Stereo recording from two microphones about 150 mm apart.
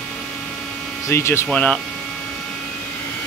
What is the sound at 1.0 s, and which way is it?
Speech, 15° left (ahead or behind).